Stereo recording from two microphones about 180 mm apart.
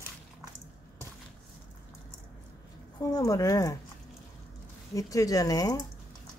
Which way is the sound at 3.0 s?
20° left (ahead or behind).